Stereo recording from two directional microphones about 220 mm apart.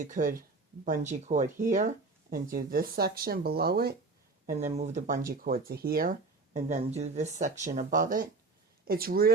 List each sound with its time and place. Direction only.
0.0 s speech: 35° right (ahead or behind)
4.8 s speech: 35° right (ahead or behind)